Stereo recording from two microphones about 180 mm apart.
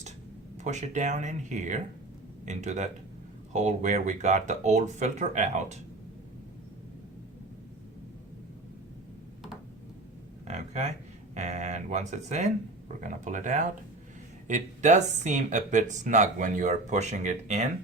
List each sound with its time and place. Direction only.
0.5 s speech: 40° right (ahead or behind)
10.4 s a sound: 35° right (ahead or behind)
11.3 s speech: 40° right (ahead or behind)